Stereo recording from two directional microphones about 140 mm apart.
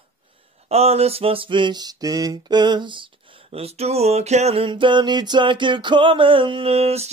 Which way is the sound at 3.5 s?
45° right (ahead or behind).